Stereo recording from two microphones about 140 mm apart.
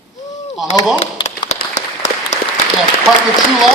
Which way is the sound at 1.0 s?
45° left (ahead or behind).